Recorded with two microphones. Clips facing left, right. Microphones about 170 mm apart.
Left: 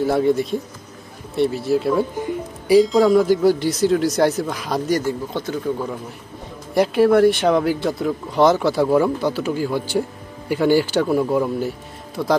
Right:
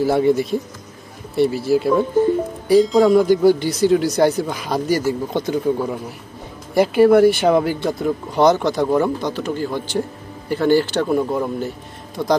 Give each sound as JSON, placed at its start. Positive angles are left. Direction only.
{"t": 0.0, "sound": "speech", "side_deg": 0}
{"t": 5.3, "sound": "speech", "side_deg": -15}
{"t": 6.7, "sound": "speech", "side_deg": 0}